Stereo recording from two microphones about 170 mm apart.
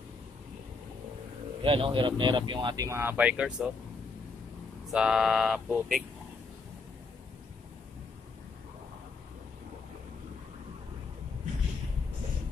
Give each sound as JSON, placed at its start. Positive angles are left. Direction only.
{"t": 1.6, "sound": "speech", "side_deg": -30}
{"t": 4.8, "sound": "speech", "side_deg": -5}